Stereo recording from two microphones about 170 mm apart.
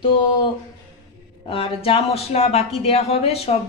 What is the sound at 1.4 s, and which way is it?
Speech, 35° left (ahead or behind).